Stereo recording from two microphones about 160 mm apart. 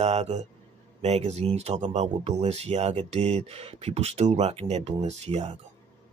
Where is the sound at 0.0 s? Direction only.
40° right (ahead or behind).